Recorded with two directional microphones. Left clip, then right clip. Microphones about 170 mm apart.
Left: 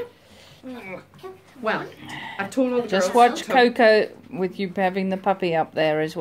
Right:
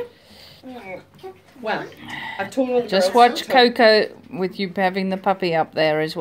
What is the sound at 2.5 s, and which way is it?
Speech, 60° left (ahead or behind).